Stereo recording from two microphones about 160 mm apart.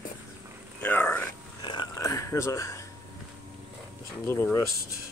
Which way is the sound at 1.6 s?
25° left (ahead or behind).